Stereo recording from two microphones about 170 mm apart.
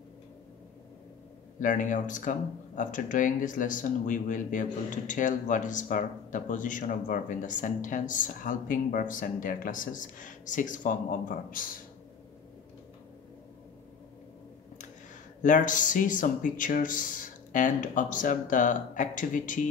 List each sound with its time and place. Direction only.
1.6 s speech: 50° left (ahead or behind)
15.4 s speech: 50° left (ahead or behind)